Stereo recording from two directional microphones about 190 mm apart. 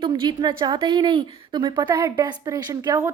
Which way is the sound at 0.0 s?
25° right (ahead or behind).